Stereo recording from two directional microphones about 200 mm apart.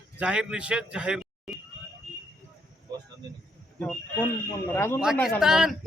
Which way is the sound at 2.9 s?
20° right (ahead or behind).